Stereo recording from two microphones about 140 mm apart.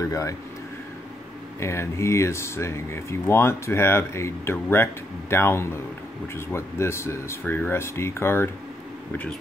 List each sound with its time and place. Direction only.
0.0 s speech: 25° left (ahead or behind)
1.6 s speech: 20° left (ahead or behind)